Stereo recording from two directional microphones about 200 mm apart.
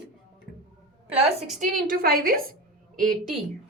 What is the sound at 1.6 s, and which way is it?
Speech, 45° right (ahead or behind).